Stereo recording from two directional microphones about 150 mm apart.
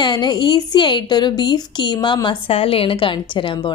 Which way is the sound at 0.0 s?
30° left (ahead or behind).